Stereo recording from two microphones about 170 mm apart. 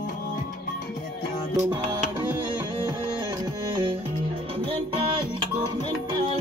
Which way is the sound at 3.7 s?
30° right (ahead or behind).